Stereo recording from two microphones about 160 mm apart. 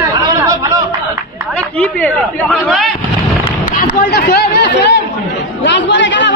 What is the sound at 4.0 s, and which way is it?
Speech, 90° left.